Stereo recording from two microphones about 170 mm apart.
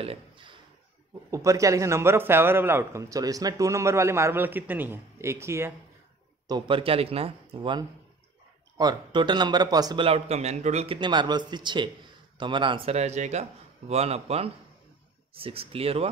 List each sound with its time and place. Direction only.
0.0 s speech: 30° right (ahead or behind)
1.3 s a man's voice: 20° right (ahead or behind)
6.4 s speech: 25° right (ahead or behind)
10.0 s speech: 40° right (ahead or behind)
11.0 s speech: 25° right (ahead or behind)